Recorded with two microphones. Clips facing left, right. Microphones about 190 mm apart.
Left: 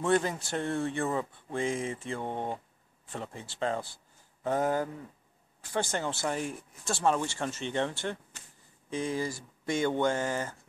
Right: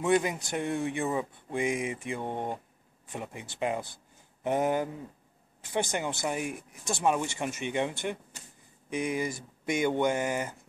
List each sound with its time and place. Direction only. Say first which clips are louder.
0.0 s speech: right 1 dB; 15° right (ahead or behind)